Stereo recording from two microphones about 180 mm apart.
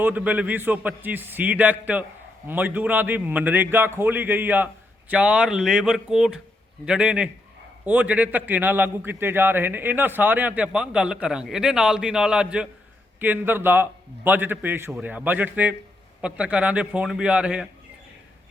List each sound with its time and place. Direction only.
0.0 s a man's voice: 10° right (ahead or behind)